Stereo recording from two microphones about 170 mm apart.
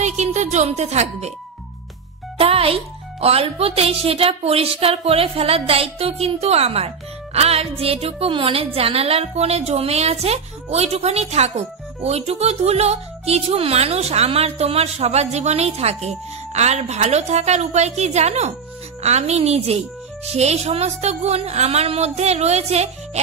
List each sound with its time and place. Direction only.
0.0 s a woman's voice: 40° right (ahead or behind)
2.3 s a woman's voice: 35° right (ahead or behind)